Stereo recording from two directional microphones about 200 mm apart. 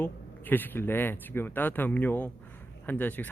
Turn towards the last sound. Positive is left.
turn(degrees=10)  # may be behind; listen again after turning